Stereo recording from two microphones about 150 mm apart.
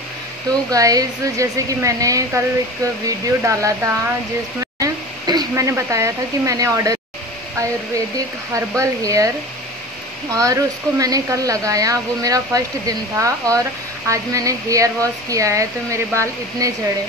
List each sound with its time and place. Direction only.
0.7 s speech: 25° right (ahead or behind)
3.4 s speech: 20° right (ahead or behind)
8.5 s speech: 20° right (ahead or behind)
10.3 s speech: 25° right (ahead or behind)